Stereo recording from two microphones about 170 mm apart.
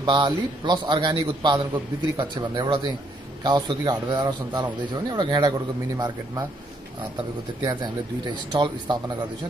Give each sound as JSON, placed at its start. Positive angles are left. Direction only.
{"t": 0.0, "sound": "a man's voice", "side_deg": -25}
{"t": 7.6, "sound": "a man's voice", "side_deg": -25}